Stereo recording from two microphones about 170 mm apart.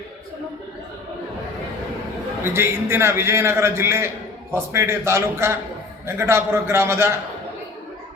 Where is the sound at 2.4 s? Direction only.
15° right (ahead or behind).